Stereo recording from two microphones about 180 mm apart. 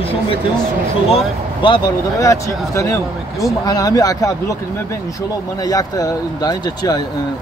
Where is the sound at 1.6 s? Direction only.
25° left (ahead or behind).